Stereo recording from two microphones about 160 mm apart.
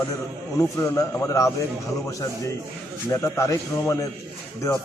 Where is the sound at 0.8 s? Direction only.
20° left (ahead or behind).